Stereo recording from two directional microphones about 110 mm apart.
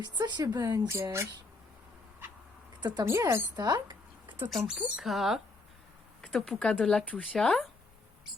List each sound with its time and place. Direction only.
0.0 s a woman's voice: 40° right (ahead or behind)
3.0 s a woman's voice: 25° right (ahead or behind)
3.5 s a sound: 40° right (ahead or behind)
4.6 s a woman's voice: 5° right (ahead or behind)
6.2 s speech: 10° left (ahead or behind)